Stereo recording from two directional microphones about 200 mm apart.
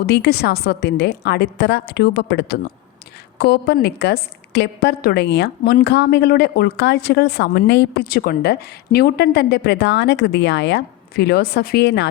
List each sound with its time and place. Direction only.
0.0 s a woman's voice: 55° left (ahead or behind)